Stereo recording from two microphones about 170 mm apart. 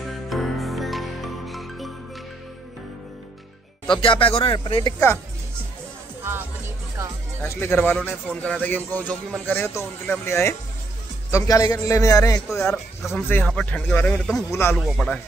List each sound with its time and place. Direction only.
0.3 s music: centre (ahead or behind)
3.9 s a man's voice: 30° left (ahead or behind)
7.4 s a man's voice: 15° left (ahead or behind)
12.4 s speech: 5° left (ahead or behind)
13.2 s speech: 10° left (ahead or behind)
14.8 s speech: 5° left (ahead or behind)